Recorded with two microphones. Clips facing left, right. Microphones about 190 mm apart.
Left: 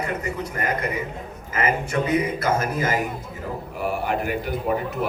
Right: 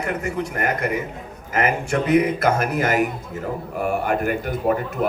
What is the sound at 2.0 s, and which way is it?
Speech, 70° right (ahead or behind).